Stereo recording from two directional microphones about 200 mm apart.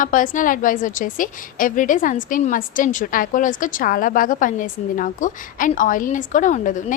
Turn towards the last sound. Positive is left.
turn(degrees=40)  # may be behind; listen again after turning